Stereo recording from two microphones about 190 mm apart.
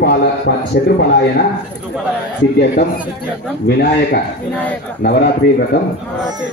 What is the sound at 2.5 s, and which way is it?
Speech, 55° left (ahead or behind).